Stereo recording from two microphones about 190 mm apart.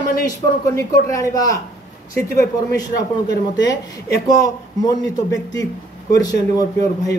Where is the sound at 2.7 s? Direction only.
20° left (ahead or behind).